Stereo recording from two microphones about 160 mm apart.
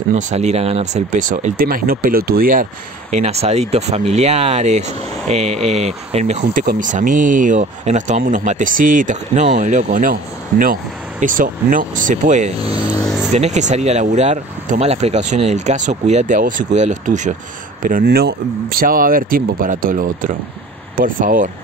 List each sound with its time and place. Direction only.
0.1 s speech: 45° right (ahead or behind)
6.6 s speech: 60° right (ahead or behind)
12.6 s speech: 25° left (ahead or behind)
13.0 s speech: centre (ahead or behind)
13.3 s speech: 45° right (ahead or behind)
17.8 s speech: 65° right (ahead or behind)